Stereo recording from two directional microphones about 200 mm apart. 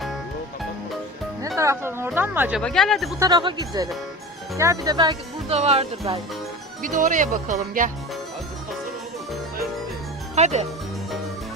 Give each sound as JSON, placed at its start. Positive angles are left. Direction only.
{"t": 1.5, "sound": "speech", "side_deg": -15}
{"t": 2.6, "sound": "speech", "side_deg": 0}
{"t": 3.2, "sound": "speech", "side_deg": -20}
{"t": 10.3, "sound": "speech", "side_deg": -35}